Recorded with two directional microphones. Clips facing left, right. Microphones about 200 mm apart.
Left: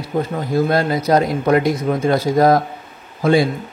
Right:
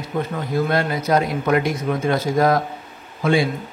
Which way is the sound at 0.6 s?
35° left (ahead or behind).